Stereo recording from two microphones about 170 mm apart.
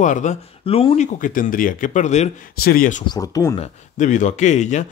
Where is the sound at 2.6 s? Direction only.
55° left (ahead or behind).